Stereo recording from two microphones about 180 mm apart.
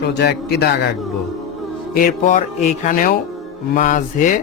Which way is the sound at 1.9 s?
55° left (ahead or behind).